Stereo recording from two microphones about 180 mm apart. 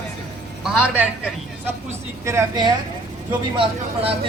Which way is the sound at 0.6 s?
5° right (ahead or behind).